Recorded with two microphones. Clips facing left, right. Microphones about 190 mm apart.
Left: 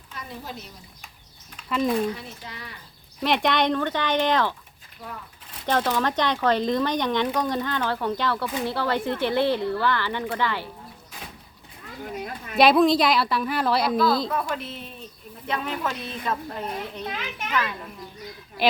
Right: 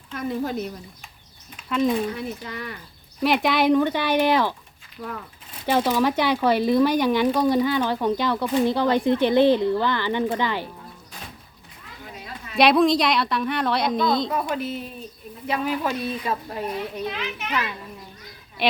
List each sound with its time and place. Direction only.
0.1 s a woman's voice: 55° right (ahead or behind)
1.5 s speech: centre (ahead or behind)
2.5 s speech: 55° right (ahead or behind)
3.2 s speech: 5° right (ahead or behind)
5.6 s speech: 10° right (ahead or behind)
12.1 s a sound: 55° left (ahead or behind)
12.5 s a woman's voice: centre (ahead or behind)
17.1 s a child's voice: 45° left (ahead or behind)